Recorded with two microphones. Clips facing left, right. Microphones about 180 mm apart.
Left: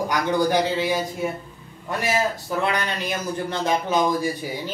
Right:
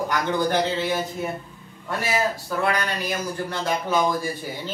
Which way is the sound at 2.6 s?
20° left (ahead or behind).